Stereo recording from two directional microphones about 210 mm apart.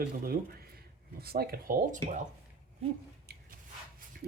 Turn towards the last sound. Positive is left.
turn(degrees=-50)  # may be behind; listen again after turning